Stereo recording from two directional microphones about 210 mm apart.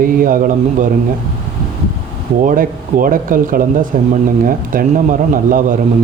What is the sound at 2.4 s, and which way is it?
Speech, 40° right (ahead or behind).